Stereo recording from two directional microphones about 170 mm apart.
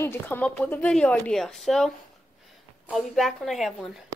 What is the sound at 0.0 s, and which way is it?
Speech, 10° left (ahead or behind).